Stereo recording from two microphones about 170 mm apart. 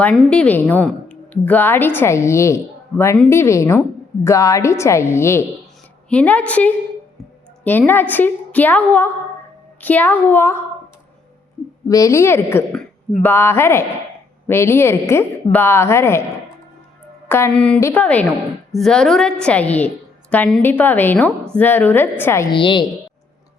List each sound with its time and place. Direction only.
0.0 s a woman's voice: 5° left (ahead or behind)
11.9 s a woman's voice: 20° left (ahead or behind)
17.2 s a woman's voice: 15° left (ahead or behind)
22.5 s a woman's voice: 30° left (ahead or behind)